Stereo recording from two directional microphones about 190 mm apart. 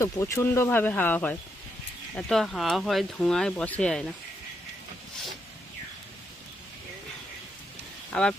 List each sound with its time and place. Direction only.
0.0 s speech: 15° left (ahead or behind)
8.1 s speech: 5° left (ahead or behind)